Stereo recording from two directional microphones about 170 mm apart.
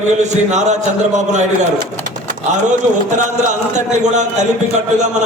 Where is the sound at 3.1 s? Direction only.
45° right (ahead or behind).